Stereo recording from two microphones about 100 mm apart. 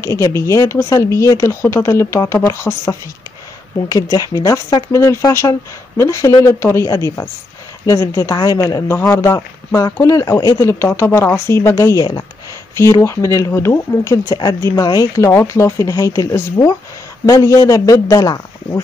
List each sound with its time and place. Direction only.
0.0 s speech: 30° left (ahead or behind)
3.9 s speech: 35° left (ahead or behind)